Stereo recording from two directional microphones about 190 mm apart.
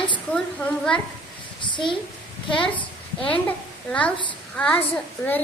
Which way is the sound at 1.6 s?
25° left (ahead or behind).